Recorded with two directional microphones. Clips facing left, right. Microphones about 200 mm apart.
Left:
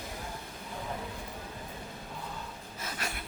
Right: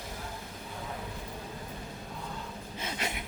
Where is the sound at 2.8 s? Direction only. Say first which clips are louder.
Right 3 dB; 20° right (ahead or behind).